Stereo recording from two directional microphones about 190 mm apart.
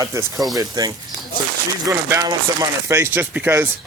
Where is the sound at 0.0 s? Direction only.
15° right (ahead or behind).